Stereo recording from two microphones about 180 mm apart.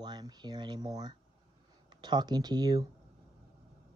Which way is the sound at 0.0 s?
25° right (ahead or behind).